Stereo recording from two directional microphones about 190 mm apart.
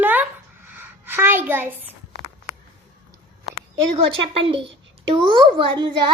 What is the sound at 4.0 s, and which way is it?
A woman's voice, 30° right (ahead or behind).